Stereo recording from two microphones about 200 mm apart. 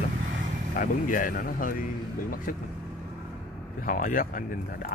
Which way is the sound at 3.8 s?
40° left (ahead or behind).